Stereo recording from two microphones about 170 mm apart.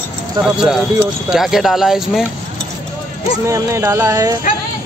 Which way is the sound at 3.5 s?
15° right (ahead or behind).